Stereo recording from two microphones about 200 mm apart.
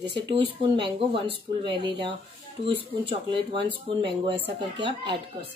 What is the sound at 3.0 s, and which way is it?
Speech, 25° right (ahead or behind).